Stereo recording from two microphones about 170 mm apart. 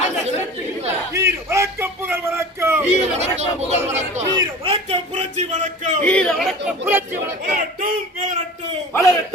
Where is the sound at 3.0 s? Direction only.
40° right (ahead or behind).